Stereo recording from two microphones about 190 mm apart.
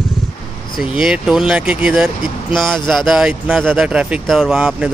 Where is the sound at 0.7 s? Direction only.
Centre (ahead or behind).